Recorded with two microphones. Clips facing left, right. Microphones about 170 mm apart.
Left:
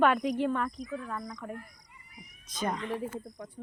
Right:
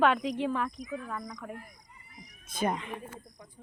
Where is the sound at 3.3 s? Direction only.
25° left (ahead or behind).